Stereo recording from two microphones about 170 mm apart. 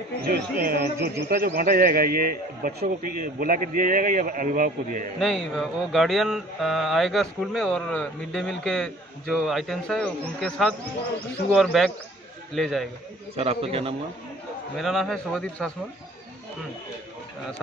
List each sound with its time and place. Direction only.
0.3 s speech: 60° right (ahead or behind)
5.2 s speech: centre (ahead or behind)
13.4 s a man's voice: 35° right (ahead or behind)
14.8 s speech: centre (ahead or behind)